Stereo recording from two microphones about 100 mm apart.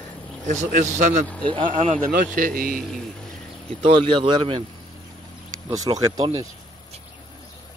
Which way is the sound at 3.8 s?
65° right (ahead or behind).